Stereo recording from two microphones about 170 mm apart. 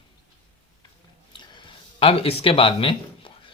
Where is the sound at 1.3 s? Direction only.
30° left (ahead or behind).